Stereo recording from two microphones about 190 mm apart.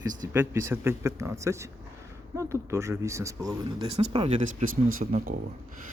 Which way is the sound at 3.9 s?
35° right (ahead or behind).